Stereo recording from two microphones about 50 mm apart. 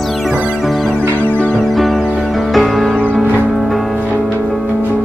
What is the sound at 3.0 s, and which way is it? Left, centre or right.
Music, right.